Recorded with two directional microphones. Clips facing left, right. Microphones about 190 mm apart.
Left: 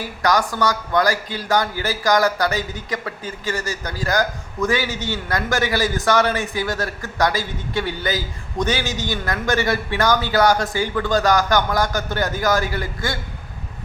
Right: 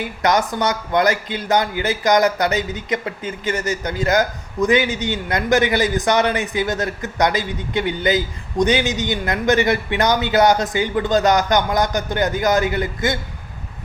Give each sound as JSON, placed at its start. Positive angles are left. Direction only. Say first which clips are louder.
{"t": 0.0, "sound": "a man's voice", "louder": "right 1 dB", "side_deg": -20}